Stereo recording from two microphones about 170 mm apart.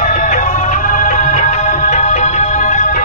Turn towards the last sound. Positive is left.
turn(degrees=50)  # may be behind; listen again after turning